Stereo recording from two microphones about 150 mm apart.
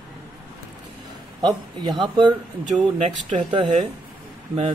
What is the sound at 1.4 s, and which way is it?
Speech, 30° right (ahead or behind).